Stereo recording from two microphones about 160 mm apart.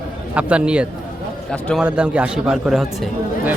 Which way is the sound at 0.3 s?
5° right (ahead or behind).